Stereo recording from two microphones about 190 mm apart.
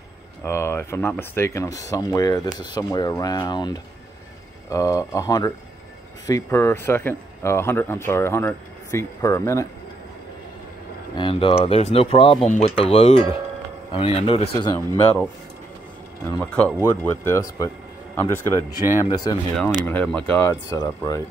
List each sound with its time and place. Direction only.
0.4 s speech: 15° left (ahead or behind)
11.1 s speech: 25° left (ahead or behind)
16.3 s speech: 10° left (ahead or behind)
19.5 s speech: 5° left (ahead or behind)